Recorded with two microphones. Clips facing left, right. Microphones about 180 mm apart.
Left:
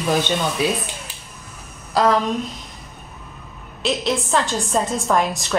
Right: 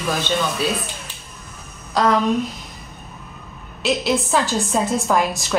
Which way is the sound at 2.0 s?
5° left (ahead or behind).